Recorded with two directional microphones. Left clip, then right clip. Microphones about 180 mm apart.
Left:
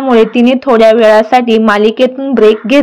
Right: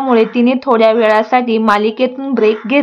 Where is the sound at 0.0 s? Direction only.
15° left (ahead or behind).